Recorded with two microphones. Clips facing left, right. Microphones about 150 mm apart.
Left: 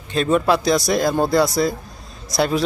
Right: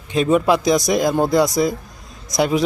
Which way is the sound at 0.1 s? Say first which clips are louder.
Right 2 dB; 15° right (ahead or behind).